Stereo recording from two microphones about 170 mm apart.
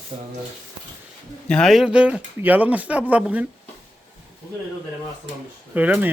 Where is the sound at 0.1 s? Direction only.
35° right (ahead or behind).